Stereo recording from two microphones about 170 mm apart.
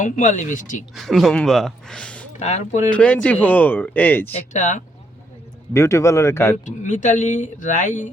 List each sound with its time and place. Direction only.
0.0 s speech: 45° left (ahead or behind)
0.9 s speech: centre (ahead or behind)
2.4 s speech: 45° left (ahead or behind)
2.9 s speech: 5° left (ahead or behind)
4.3 s speech: 40° left (ahead or behind)
5.7 s speech: 15° left (ahead or behind)
6.7 s speech: 50° left (ahead or behind)